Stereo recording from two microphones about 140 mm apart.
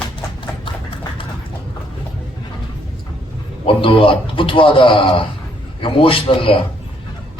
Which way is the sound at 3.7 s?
40° left (ahead or behind).